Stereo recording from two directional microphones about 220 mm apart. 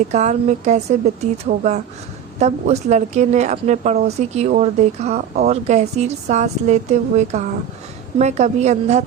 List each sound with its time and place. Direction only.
0.1 s a woman's voice: 30° right (ahead or behind)